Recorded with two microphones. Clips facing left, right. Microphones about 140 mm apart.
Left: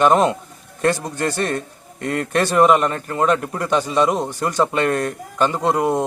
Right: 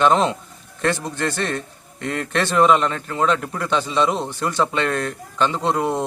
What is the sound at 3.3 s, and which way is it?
Speech, 40° left (ahead or behind).